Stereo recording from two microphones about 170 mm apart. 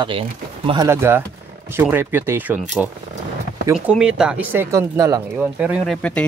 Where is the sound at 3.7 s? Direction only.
5° right (ahead or behind); by 5.2 s 20° right (ahead or behind).